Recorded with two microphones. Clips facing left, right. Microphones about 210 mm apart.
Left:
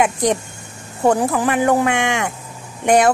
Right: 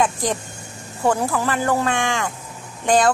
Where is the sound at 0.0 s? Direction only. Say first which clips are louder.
Left 4 dB; 20° left (ahead or behind).